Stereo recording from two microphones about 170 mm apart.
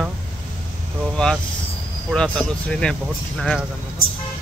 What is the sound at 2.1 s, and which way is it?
Speech, 5° left (ahead or behind).